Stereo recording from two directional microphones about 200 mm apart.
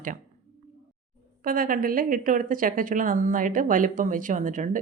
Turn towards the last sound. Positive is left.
turn(degrees=-40)  # may be behind; listen again after turning